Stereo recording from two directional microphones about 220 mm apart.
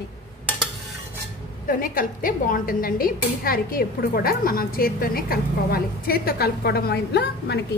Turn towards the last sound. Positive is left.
turn(degrees=50)  # may be behind; listen again after turning